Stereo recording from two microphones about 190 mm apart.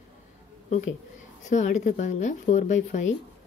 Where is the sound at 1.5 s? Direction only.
40° left (ahead or behind).